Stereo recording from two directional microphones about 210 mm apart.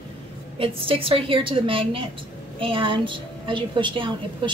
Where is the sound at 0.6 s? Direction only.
25° right (ahead or behind).